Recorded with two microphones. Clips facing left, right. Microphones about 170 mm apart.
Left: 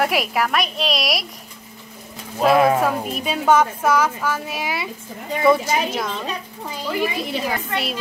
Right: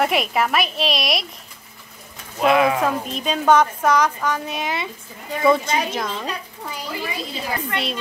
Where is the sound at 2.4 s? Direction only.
40° left (ahead or behind).